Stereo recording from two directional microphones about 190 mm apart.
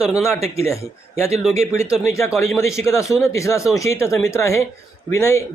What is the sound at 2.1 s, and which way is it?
Speech, 15° left (ahead or behind).